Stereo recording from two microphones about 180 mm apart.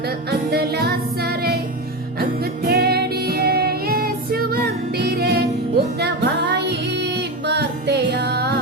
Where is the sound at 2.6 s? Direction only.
60° right (ahead or behind).